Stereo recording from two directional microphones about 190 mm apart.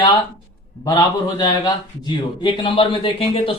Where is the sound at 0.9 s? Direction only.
20° left (ahead or behind).